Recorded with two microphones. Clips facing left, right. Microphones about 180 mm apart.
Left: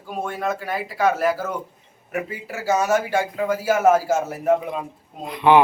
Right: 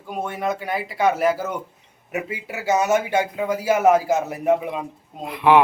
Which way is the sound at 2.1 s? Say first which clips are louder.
Even; 20° right (ahead or behind).